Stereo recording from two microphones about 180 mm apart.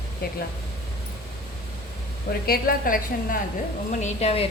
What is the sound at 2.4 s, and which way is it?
Speech, 55° left (ahead or behind).